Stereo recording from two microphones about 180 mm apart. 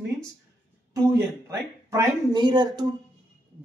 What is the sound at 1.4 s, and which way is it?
Speech, 15° right (ahead or behind).